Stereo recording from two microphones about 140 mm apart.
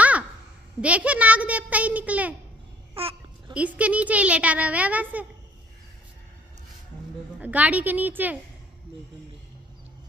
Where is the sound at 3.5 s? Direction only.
10° right (ahead or behind).